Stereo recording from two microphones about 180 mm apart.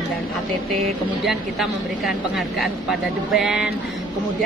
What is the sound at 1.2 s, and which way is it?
Speech, centre (ahead or behind).